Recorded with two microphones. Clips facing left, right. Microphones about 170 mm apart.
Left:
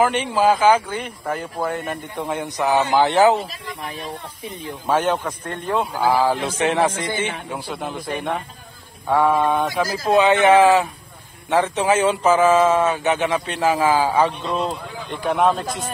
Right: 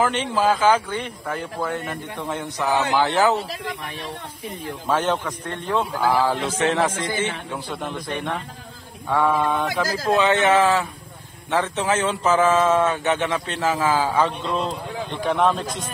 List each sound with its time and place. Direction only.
0.0 s a man's voice: 15° left (ahead or behind)
4.8 s a man's voice: 10° left (ahead or behind)
9.1 s a man's voice: 25° left (ahead or behind); by 15.5 s 10° left (ahead or behind)
15.5 s a man's voice: 50° left (ahead or behind)